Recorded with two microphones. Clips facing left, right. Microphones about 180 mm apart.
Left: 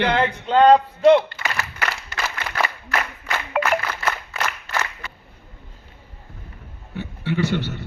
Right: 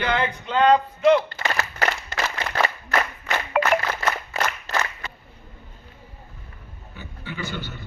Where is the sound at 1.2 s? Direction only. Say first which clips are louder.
Right 2 dB; 45° right (ahead or behind).